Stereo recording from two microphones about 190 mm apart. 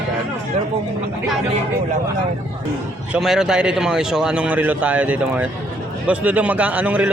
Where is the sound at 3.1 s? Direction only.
Centre (ahead or behind).